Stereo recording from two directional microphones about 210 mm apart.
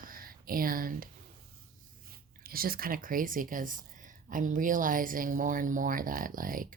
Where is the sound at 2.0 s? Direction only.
45° right (ahead or behind).